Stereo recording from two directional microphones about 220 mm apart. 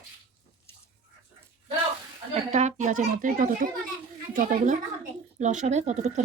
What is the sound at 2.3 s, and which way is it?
A woman's voice, 30° right (ahead or behind).